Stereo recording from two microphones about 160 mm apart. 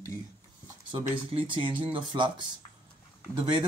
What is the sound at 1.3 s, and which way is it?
Speech, 30° right (ahead or behind).